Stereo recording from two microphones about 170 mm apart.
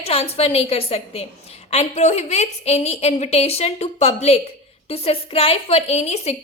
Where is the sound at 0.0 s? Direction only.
35° left (ahead or behind).